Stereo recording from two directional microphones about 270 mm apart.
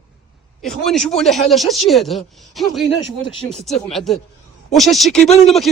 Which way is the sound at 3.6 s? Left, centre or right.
Centre.